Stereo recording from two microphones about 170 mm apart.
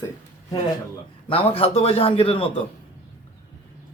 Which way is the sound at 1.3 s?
35° left (ahead or behind).